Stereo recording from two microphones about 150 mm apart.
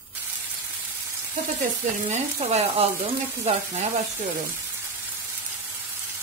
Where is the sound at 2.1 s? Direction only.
50° right (ahead or behind).